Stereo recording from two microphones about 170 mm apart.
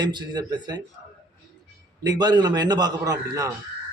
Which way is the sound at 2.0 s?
25° right (ahead or behind).